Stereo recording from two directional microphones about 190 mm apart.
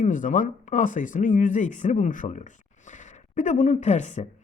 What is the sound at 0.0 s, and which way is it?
Speech, 45° left (ahead or behind).